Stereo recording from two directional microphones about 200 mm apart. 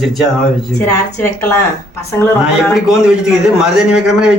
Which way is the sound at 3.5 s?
Centre (ahead or behind).